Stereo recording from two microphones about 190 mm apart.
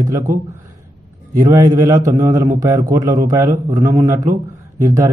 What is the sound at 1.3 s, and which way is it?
Speech, 20° right (ahead or behind).